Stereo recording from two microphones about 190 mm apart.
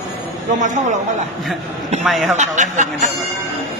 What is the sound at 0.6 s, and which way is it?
Speech, 40° right (ahead or behind).